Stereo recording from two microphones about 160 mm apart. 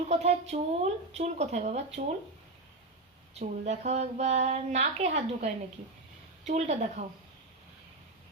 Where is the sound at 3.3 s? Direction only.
45° right (ahead or behind).